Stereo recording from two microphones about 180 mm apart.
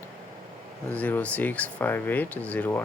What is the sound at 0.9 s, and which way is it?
Speech, 10° left (ahead or behind).